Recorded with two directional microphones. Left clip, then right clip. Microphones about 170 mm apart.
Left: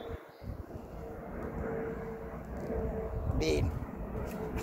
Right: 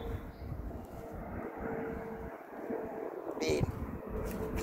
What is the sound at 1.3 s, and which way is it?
Vehicle, 45° left (ahead or behind).